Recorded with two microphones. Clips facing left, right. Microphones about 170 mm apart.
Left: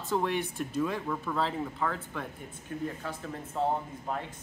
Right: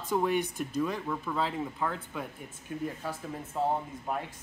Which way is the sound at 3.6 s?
5° right (ahead or behind).